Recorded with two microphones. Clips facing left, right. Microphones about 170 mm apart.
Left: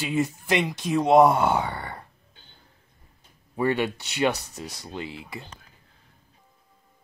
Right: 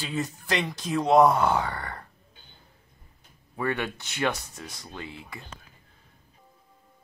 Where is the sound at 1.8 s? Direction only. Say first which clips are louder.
Left 1 dB; 5° left (ahead or behind).